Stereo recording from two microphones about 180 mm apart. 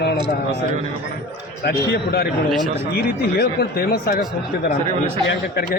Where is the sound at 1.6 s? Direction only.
60° left (ahead or behind).